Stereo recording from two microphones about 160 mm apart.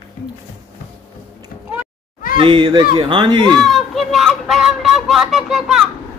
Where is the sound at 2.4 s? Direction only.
30° right (ahead or behind).